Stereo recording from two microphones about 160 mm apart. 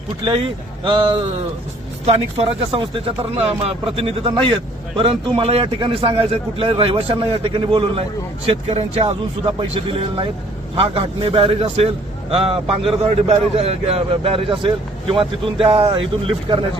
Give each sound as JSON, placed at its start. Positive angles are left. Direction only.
{"t": 0.3, "sound": "a man's voice", "side_deg": -30}
{"t": 13.2, "sound": "a man's voice", "side_deg": -40}